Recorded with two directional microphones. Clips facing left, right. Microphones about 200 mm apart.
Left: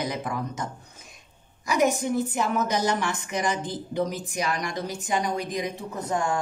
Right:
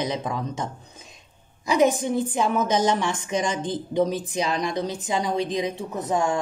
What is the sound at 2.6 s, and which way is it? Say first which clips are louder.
A woman's voice: right 4 dB; 20° right (ahead or behind).